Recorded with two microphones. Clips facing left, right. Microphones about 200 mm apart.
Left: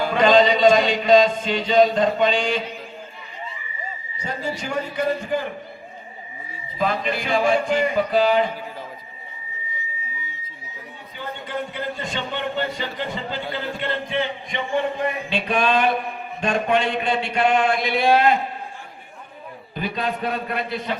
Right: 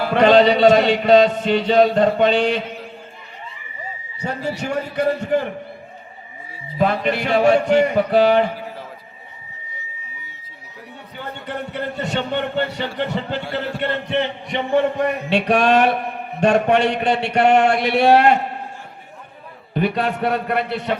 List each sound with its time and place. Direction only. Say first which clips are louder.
0.1 s speech: right 4 dB; 65° right (ahead or behind)
4.2 s a man's voice: right 4 dB; 65° right (ahead or behind)
6.7 s speech: right 4 dB; 65° right (ahead or behind)
11.2 s a man's voice: even; 65° right (ahead or behind)
19.7 s speech: right 6 dB; 65° right (ahead or behind)